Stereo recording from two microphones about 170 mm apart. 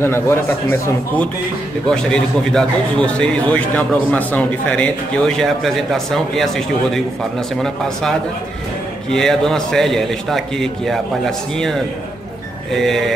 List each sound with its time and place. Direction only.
0.0 s a man's voice: 15° left (ahead or behind)
9.1 s a man's voice: 5° left (ahead or behind)